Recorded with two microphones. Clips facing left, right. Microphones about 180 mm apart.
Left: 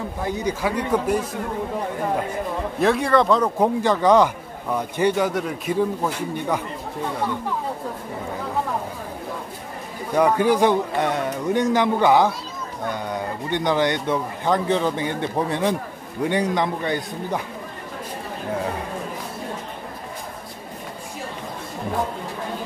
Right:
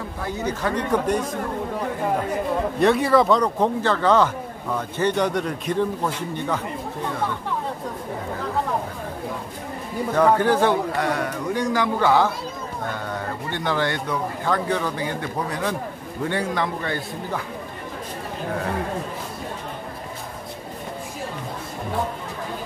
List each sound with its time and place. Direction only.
0.2 s speech: 15° left (ahead or behind)
2.8 s speech: centre (ahead or behind)
10.1 s speech: 15° left (ahead or behind)